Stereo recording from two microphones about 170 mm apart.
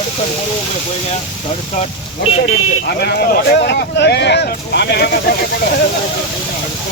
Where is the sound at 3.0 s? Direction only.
70° left (ahead or behind).